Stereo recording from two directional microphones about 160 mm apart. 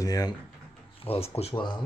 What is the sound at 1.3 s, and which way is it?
Speech, 35° left (ahead or behind).